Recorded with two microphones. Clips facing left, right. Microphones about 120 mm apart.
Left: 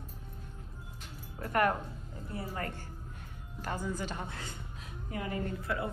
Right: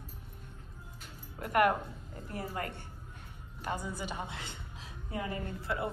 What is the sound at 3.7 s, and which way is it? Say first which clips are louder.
A woman's voice: left 1 dB; 10° right (ahead or behind).